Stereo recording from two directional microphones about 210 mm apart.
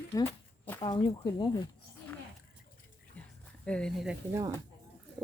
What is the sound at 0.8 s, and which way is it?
Speech, 20° left (ahead or behind).